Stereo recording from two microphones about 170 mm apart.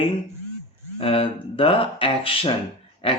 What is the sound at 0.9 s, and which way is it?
Speech, 35° left (ahead or behind).